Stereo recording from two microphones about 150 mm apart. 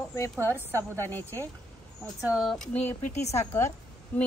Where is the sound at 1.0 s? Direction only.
15° left (ahead or behind).